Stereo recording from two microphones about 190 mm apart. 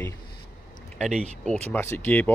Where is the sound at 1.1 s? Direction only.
35° right (ahead or behind).